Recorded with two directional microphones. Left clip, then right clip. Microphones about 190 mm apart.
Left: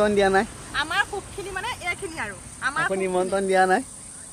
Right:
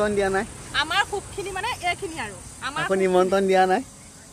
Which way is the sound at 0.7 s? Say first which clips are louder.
Right 2 dB; 40° right (ahead or behind).